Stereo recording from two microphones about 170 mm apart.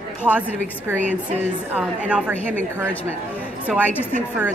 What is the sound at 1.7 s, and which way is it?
Speech, 10° right (ahead or behind).